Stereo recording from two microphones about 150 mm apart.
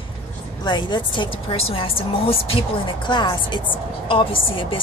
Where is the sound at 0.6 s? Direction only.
30° left (ahead or behind).